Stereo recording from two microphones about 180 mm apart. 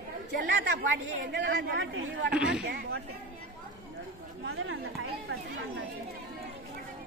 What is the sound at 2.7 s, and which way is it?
Speech, 65° right (ahead or behind).